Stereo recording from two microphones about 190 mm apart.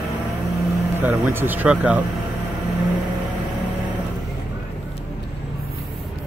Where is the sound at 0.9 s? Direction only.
10° right (ahead or behind).